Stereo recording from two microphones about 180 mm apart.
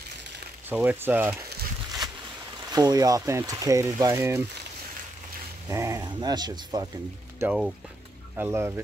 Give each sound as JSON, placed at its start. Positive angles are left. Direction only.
{"t": 0.7, "sound": "speech", "side_deg": -10}
{"t": 2.7, "sound": "speech", "side_deg": -20}
{"t": 5.7, "sound": "speech", "side_deg": -15}
{"t": 7.3, "sound": "speech", "side_deg": -5}